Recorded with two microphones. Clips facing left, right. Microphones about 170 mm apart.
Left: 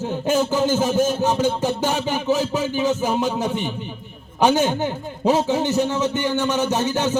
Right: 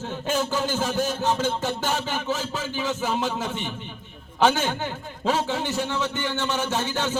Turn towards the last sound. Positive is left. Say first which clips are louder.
# left 5 dB
turn(degrees=20)  # may be behind; listen again after turning